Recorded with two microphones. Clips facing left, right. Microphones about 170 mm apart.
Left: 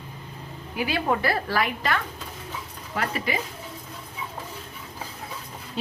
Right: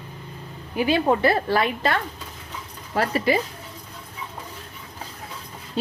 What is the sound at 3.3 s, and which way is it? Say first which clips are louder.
Speech: right 10 dB; 35° right (ahead or behind).